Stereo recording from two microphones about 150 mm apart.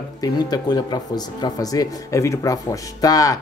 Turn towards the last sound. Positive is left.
turn(degrees=25)  # may be behind; listen again after turning